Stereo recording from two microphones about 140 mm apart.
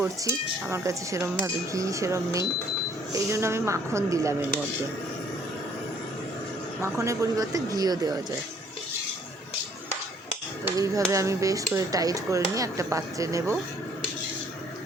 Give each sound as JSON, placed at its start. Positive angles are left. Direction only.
{"t": 0.7, "sound": "speech", "side_deg": -20}
{"t": 6.8, "sound": "speech", "side_deg": -20}
{"t": 10.8, "sound": "speech", "side_deg": -25}